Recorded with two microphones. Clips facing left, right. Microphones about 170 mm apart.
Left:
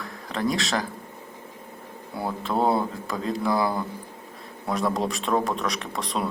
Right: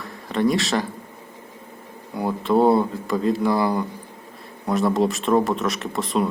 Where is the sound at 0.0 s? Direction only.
Centre (ahead or behind).